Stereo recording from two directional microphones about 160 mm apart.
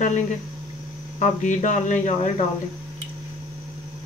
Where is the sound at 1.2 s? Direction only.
50° left (ahead or behind).